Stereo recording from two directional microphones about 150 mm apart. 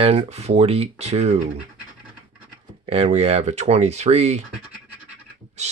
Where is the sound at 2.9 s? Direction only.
45° right (ahead or behind).